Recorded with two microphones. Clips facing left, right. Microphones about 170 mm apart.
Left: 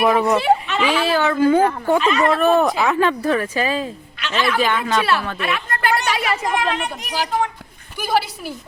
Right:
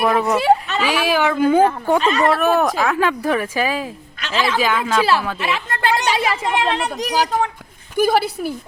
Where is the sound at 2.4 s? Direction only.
Centre (ahead or behind).